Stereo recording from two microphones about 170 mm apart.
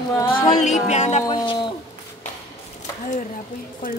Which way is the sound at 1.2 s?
30° left (ahead or behind).